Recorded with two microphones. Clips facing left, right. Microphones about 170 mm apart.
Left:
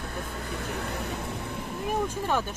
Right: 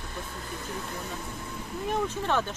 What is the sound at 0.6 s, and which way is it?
Vehicle, 70° left (ahead or behind).